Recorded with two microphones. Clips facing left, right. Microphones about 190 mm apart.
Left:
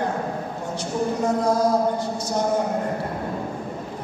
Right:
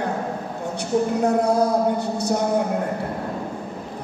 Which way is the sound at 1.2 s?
65° right (ahead or behind).